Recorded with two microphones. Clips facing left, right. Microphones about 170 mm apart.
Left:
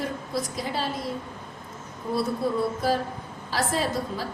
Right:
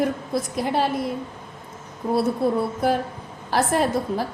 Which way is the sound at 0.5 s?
60° right (ahead or behind).